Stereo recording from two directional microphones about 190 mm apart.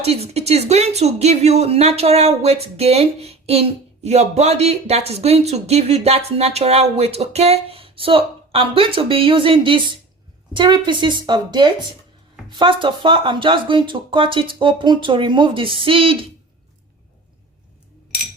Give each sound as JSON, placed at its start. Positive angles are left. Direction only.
{"t": 0.0, "sound": "speech", "side_deg": -35}